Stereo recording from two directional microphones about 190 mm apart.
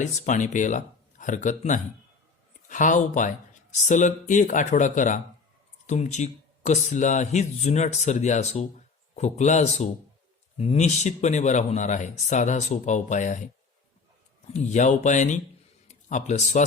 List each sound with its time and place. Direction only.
0.0 s speech: 40° left (ahead or behind)
14.5 s speech: 40° left (ahead or behind)